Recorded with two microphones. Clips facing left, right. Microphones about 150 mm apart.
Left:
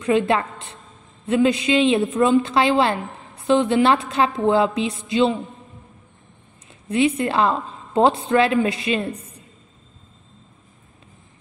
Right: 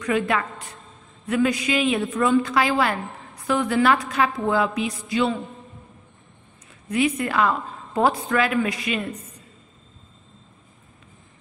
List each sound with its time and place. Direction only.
0.0 s a woman's voice: 25° left (ahead or behind)
6.7 s a woman's voice: 25° left (ahead or behind)